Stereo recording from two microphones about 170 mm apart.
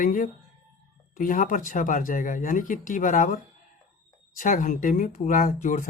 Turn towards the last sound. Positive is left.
turn(degrees=50)  # may be behind; listen again after turning